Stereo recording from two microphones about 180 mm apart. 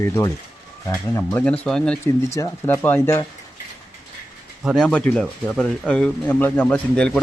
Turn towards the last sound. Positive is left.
turn(degrees=10)  # may be behind; listen again after turning